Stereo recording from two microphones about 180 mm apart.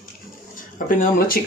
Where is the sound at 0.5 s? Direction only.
50° left (ahead or behind).